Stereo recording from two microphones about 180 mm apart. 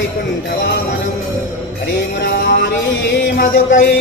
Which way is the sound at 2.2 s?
60° left (ahead or behind).